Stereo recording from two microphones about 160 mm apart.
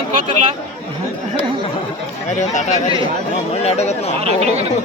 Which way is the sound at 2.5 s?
45° left (ahead or behind).